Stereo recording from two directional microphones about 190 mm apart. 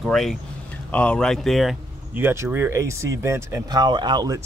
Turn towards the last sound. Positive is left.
turn(degrees=-20)  # may be behind; listen again after turning